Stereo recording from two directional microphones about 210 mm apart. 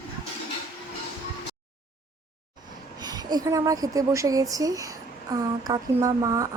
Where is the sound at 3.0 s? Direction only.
20° right (ahead or behind).